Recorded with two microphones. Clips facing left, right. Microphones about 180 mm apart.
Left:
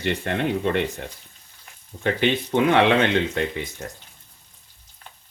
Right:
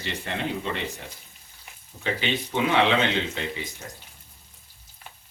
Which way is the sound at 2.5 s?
55° left (ahead or behind).